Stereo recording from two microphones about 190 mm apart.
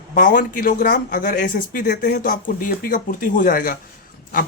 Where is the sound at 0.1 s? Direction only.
45° left (ahead or behind).